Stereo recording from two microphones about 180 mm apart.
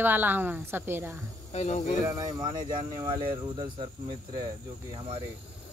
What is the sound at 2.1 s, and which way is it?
Speech, 20° right (ahead or behind).